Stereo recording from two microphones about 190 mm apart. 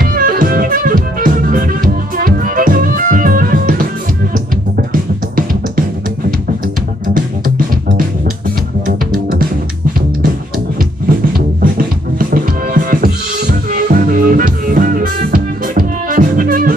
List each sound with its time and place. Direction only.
0.0 s music: 50° right (ahead or behind)
5.3 s music: 50° right (ahead or behind)
8.8 s music: 50° right (ahead or behind)
11.1 s music: 50° right (ahead or behind)